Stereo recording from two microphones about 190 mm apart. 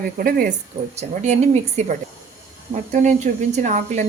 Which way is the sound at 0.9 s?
35° right (ahead or behind).